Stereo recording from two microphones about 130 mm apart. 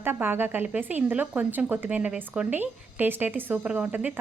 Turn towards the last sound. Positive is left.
turn(degrees=-10)  # may be behind; listen again after turning